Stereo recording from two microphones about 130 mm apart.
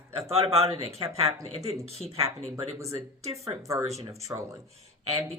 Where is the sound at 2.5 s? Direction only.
25° right (ahead or behind).